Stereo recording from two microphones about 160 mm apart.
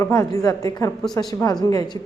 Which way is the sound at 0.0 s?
20° left (ahead or behind).